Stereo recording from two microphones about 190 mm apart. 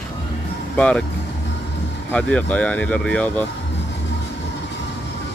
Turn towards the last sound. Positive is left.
turn(degrees=5)  # may be behind; listen again after turning